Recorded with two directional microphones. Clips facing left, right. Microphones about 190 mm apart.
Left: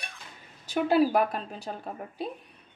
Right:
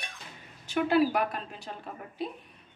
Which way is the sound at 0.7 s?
40° left (ahead or behind).